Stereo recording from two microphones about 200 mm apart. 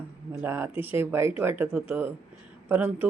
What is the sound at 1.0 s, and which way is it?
Speech, 10° right (ahead or behind).